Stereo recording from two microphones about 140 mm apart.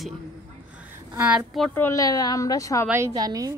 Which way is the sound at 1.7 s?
20° left (ahead or behind).